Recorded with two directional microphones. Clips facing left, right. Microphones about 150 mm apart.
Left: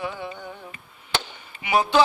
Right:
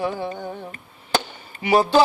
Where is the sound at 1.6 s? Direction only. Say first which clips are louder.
Right 4 dB; 35° right (ahead or behind).